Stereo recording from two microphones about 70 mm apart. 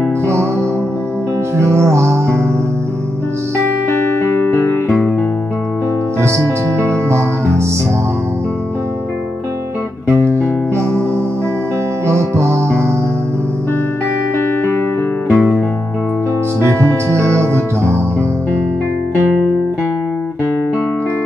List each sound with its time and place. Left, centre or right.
1.6 s music: right
4.2 s music: left
6.2 s music: right
12.1 s music: right
15.3 s music: centre
16.6 s music: right